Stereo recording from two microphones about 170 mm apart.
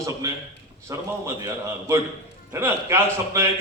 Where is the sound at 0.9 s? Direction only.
15° right (ahead or behind).